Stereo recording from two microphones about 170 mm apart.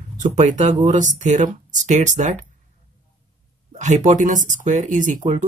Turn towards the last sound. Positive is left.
turn(degrees=-45)  # may be behind; listen again after turning